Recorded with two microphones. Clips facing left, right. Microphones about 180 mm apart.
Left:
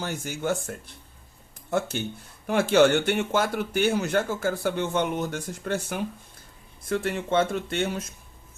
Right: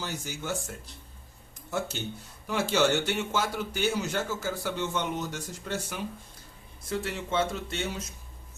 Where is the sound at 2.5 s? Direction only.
55° left (ahead or behind).